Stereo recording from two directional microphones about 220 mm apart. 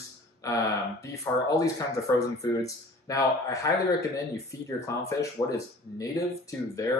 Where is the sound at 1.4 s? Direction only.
15° left (ahead or behind).